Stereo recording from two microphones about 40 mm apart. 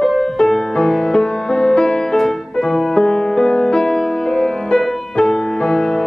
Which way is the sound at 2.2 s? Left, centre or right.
Centre.